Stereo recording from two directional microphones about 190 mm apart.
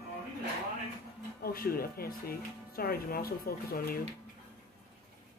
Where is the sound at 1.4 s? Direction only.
50° left (ahead or behind).